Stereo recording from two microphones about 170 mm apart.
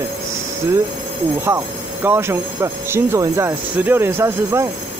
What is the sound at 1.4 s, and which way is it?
Speech, 15° right (ahead or behind).